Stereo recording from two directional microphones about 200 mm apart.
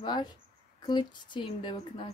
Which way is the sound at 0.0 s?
20° left (ahead or behind).